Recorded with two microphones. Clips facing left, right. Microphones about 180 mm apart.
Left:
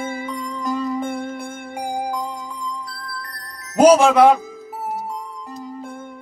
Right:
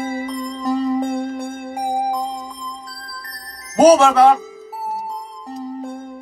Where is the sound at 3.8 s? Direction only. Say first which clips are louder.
Right 1 dB; 15° left (ahead or behind).